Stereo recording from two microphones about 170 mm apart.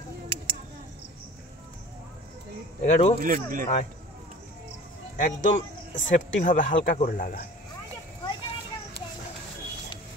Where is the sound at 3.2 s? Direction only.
50° right (ahead or behind).